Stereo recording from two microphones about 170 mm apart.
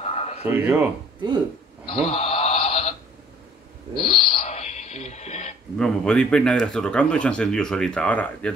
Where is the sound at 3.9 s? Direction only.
35° left (ahead or behind).